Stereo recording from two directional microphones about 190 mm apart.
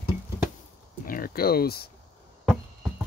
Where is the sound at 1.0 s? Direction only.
50° left (ahead or behind).